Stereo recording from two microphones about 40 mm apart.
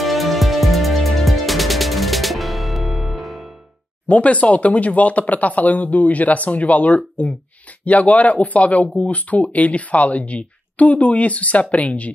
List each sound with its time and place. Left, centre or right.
0.0 s music: centre
4.1 s speech: left